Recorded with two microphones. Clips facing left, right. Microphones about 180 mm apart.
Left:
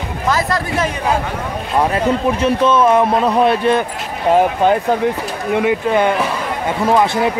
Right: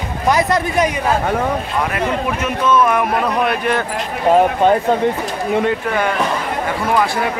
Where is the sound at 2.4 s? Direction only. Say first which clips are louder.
Left 2 dB; 30° left (ahead or behind).